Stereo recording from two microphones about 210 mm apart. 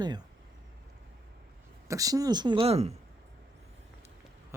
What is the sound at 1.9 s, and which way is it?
Speech, 15° right (ahead or behind).